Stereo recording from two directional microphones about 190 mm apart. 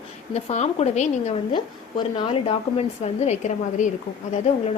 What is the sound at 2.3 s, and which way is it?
A woman's voice, 35° left (ahead or behind).